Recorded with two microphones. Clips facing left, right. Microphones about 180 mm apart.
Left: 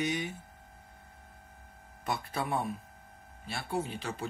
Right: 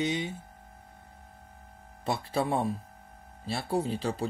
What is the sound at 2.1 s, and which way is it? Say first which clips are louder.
Speech: right 5 dB; 30° right (ahead or behind).